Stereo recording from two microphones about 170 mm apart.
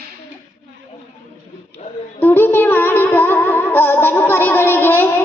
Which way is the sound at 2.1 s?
10° left (ahead or behind).